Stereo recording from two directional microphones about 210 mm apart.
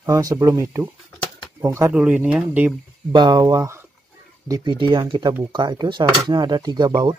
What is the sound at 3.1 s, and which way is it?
Speech, 20° right (ahead or behind).